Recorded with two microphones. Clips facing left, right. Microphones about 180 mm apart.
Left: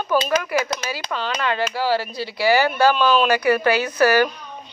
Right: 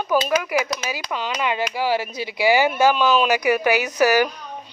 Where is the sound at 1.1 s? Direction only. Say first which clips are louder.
Even; 15° right (ahead or behind).